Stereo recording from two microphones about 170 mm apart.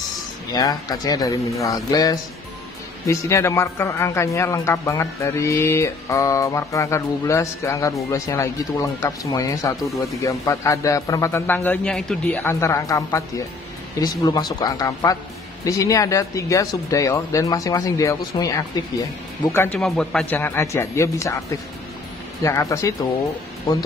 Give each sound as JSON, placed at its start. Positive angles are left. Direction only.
{"t": 0.5, "sound": "speech", "side_deg": 20}
{"t": 22.4, "sound": "speech", "side_deg": 15}